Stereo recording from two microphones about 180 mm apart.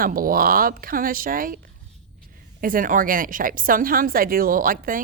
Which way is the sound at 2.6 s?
50° right (ahead or behind).